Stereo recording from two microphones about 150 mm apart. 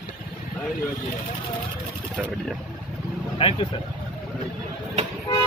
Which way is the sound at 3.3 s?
35° left (ahead or behind).